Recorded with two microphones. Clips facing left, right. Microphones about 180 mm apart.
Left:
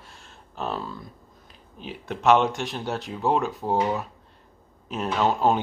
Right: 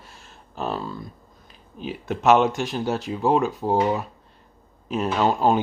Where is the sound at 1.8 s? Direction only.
5° right (ahead or behind).